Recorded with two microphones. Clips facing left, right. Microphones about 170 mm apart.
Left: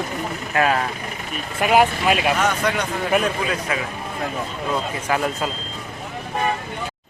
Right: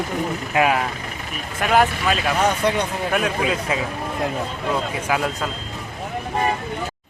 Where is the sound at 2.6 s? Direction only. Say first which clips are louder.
Right 1 dB; 30° right (ahead or behind).